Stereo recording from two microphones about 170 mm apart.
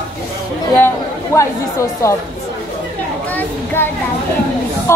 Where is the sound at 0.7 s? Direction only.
15° left (ahead or behind).